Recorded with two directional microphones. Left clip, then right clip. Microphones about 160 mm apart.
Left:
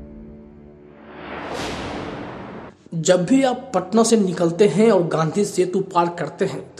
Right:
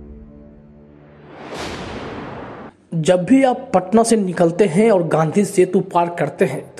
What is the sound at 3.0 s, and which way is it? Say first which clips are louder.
A man's voice: right 2 dB; 25° right (ahead or behind).